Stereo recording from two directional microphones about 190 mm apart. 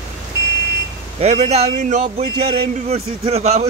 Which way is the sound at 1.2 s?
35° right (ahead or behind).